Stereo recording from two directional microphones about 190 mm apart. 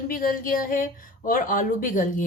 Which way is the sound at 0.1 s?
45° left (ahead or behind).